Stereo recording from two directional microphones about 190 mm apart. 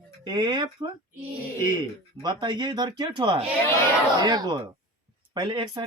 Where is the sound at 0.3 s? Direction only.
25° right (ahead or behind).